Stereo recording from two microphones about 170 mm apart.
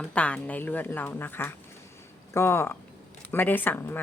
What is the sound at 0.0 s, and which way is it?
A woman's voice, 5° left (ahead or behind).